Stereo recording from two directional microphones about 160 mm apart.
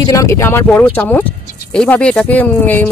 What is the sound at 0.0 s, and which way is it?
Speech, 20° left (ahead or behind).